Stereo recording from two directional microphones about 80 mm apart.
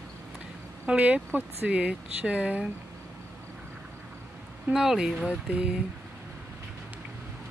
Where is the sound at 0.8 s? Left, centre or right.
Centre.